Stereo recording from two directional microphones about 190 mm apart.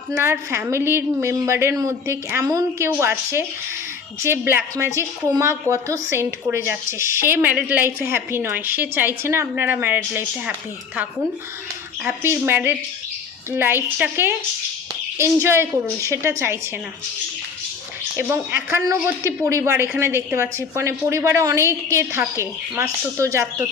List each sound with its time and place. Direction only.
0.2 s speech: 15° right (ahead or behind)
12.0 s speech: 15° right (ahead or behind)
18.2 s speech: 10° right (ahead or behind)